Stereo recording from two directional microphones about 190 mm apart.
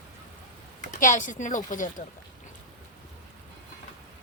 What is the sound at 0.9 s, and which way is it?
Speech, 45° left (ahead or behind).